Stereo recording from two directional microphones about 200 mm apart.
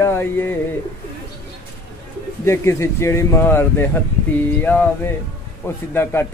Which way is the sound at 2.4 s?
15° left (ahead or behind).